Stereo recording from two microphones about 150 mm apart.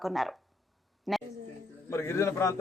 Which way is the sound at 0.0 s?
Centre (ahead or behind).